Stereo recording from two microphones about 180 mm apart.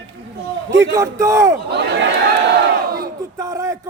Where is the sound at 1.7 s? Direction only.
65° right (ahead or behind).